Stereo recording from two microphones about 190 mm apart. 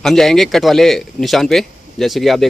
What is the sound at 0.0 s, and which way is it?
A man's voice, centre (ahead or behind).